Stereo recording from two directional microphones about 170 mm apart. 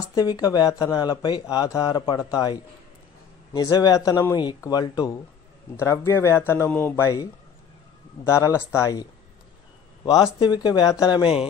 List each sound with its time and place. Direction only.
0.1 s speech: 20° left (ahead or behind)
10.0 s speech: 25° left (ahead or behind)